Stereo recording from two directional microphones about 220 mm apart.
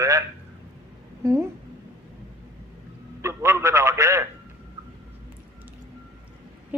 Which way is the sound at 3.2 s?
10° right (ahead or behind).